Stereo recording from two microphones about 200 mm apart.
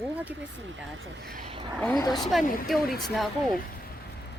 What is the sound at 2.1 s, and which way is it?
Speech, centre (ahead or behind).